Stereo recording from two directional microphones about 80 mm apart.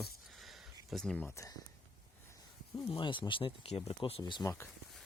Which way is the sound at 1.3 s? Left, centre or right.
Left.